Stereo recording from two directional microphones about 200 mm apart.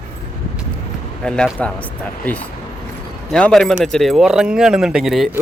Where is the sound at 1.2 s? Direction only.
5° left (ahead or behind).